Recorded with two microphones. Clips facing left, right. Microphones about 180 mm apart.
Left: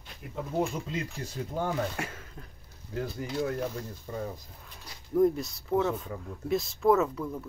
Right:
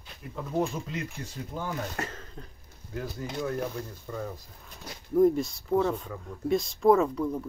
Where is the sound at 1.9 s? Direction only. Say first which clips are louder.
Right 1 dB; 10° left (ahead or behind).